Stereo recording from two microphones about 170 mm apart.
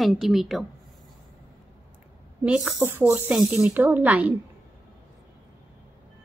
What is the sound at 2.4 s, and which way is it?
A woman's voice, 5° right (ahead or behind).